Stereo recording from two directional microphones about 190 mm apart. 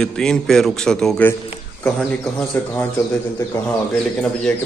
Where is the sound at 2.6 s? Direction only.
10° left (ahead or behind).